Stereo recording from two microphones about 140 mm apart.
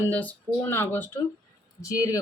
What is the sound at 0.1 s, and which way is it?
Speech, 10° left (ahead or behind).